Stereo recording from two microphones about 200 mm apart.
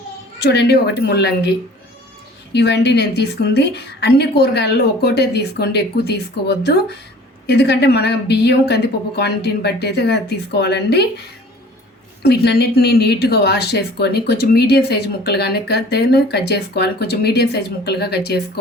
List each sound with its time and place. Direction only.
0.4 s a woman's voice: 55° left (ahead or behind)
2.5 s a woman's voice: 60° left (ahead or behind)